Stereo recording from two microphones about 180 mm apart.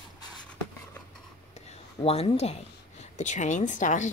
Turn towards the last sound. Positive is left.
turn(degrees=45)  # may be behind; listen again after turning